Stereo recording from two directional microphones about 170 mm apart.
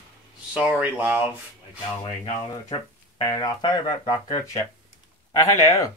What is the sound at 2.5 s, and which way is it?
Speech, 20° left (ahead or behind).